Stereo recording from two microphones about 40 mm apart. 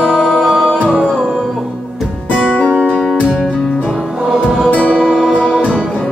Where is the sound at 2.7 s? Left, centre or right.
Right.